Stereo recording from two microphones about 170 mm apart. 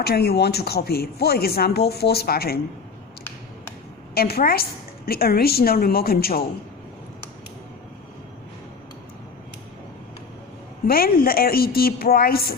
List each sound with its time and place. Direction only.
0.0 s speech: 70° left (ahead or behind)
4.1 s a woman's voice: 65° left (ahead or behind)
10.8 s a woman's voice: 60° left (ahead or behind)